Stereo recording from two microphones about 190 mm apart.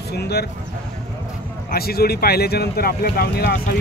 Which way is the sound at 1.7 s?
55° left (ahead or behind).